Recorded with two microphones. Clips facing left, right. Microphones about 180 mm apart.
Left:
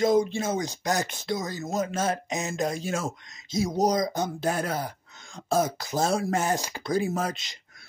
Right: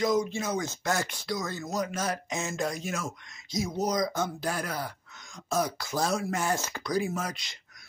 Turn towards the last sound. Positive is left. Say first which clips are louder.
# left 4 dB
turn(degrees=25)  # may be behind; listen again after turning